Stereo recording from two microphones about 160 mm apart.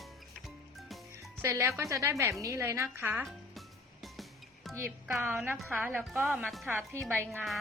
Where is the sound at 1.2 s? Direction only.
20° right (ahead or behind).